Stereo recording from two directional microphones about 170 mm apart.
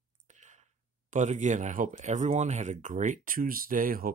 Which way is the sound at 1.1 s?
45° right (ahead or behind).